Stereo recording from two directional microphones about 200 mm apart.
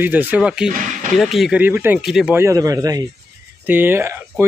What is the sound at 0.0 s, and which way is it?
Speech, 10° right (ahead or behind).